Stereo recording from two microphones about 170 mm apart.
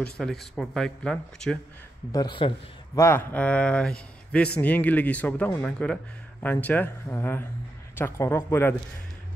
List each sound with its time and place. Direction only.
0.0 s speech: centre (ahead or behind)
2.1 s a man's voice: 30° left (ahead or behind)
3.0 s a man's voice: 15° left (ahead or behind)